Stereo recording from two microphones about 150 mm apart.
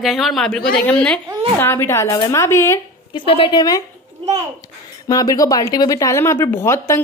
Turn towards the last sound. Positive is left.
turn(degrees=15)  # may be behind; listen again after turning